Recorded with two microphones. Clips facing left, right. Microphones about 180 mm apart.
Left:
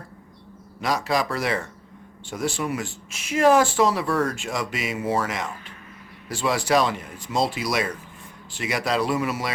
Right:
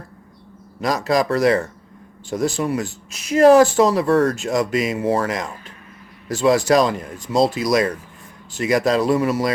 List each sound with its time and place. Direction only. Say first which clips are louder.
0.8 s speech: right 5 dB; 40° right (ahead or behind)